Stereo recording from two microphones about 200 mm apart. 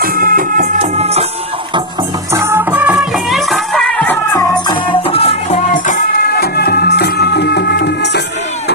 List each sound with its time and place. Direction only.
0.0 s music: 45° right (ahead or behind)
2.3 s music: 15° right (ahead or behind); by 4.6 s 10° left (ahead or behind)
4.7 s music: 25° left (ahead or behind); by 8.2 s 55° left (ahead or behind)